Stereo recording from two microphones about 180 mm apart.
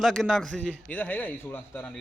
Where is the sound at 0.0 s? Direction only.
Centre (ahead or behind).